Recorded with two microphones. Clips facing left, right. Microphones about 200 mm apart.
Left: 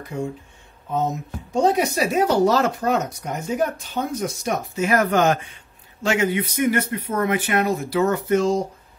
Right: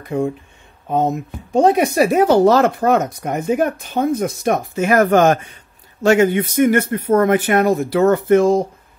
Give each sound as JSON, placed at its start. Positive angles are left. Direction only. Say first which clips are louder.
{"t": 0.1, "sound": "a man's voice", "louder": "right 8 dB", "side_deg": -65}